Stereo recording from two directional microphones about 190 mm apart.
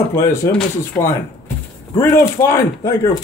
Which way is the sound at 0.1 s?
15° left (ahead or behind).